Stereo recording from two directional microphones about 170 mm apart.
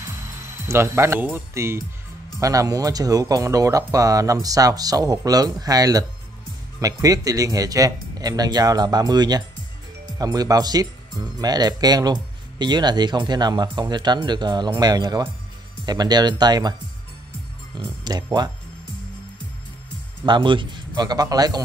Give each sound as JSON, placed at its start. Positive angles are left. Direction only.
{"t": 0.5, "sound": "speech", "side_deg": -15}
{"t": 17.7, "sound": "speech", "side_deg": -25}
{"t": 20.2, "sound": "speech", "side_deg": -30}